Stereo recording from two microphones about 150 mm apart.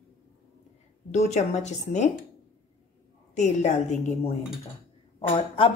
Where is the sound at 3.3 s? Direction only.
50° left (ahead or behind).